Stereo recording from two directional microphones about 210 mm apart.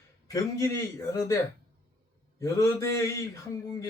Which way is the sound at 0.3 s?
15° left (ahead or behind).